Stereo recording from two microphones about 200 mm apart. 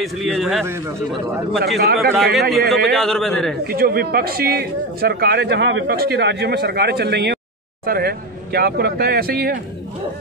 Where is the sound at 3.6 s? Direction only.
50° right (ahead or behind).